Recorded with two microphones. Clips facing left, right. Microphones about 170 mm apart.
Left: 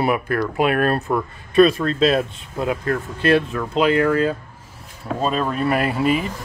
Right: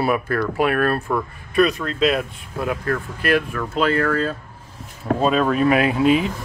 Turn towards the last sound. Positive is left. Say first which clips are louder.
# right 3 dB
turn(degrees=5)  # may be behind; listen again after turning